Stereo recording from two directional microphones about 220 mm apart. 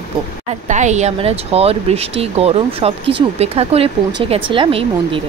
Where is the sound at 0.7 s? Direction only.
35° right (ahead or behind).